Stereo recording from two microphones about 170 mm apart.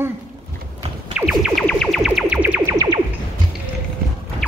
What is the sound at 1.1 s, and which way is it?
Music, 5° right (ahead or behind).